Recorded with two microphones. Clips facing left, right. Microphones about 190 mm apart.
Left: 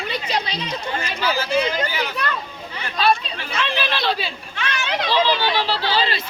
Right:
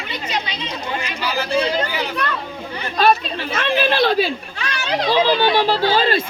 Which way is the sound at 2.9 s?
45° right (ahead or behind).